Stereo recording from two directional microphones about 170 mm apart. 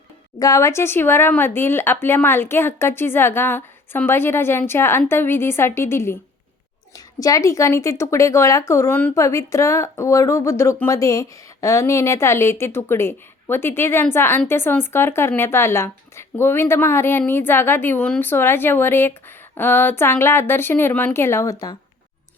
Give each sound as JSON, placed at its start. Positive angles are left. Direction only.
{"t": 0.3, "sound": "a woman's voice", "side_deg": 20}